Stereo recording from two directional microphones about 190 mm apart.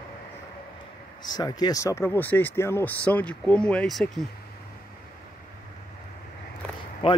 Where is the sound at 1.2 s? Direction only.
20° left (ahead or behind); by 4.2 s centre (ahead or behind).